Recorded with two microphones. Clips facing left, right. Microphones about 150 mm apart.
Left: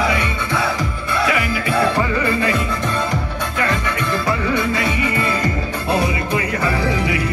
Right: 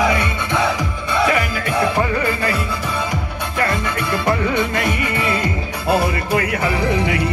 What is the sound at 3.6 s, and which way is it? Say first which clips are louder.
Music: right 1 dB; 10° right (ahead or behind).